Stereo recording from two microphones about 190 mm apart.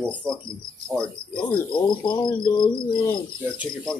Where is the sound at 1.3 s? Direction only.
25° left (ahead or behind).